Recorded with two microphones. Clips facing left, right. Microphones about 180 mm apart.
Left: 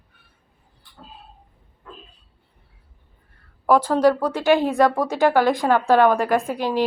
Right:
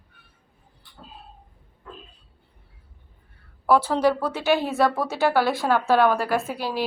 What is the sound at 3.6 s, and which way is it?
A woman's voice, 10° left (ahead or behind).